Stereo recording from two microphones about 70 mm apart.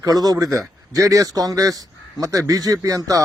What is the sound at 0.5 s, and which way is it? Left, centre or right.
A man's voice, right.